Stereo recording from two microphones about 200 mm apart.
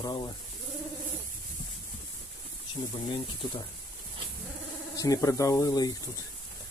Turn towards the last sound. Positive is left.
turn(degrees=20)  # may be behind; listen again after turning